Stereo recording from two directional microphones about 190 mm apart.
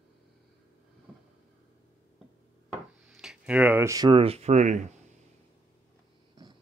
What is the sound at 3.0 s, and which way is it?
Speech, 5° right (ahead or behind).